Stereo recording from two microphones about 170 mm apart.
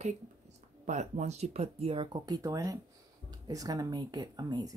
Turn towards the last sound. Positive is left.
turn(degrees=-25)  # may be behind; listen again after turning